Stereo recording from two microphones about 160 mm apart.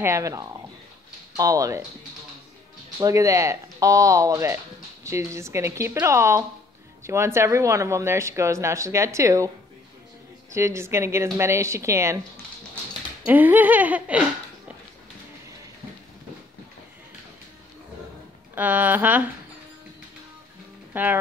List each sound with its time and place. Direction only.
0.0 s speech: 20° right (ahead or behind)
3.0 s speech: 20° right (ahead or behind)
10.5 s speech: 15° right (ahead or behind)
13.2 s speech: 10° right (ahead or behind)
18.5 s speech: 10° right (ahead or behind)
20.9 s speech: 10° right (ahead or behind)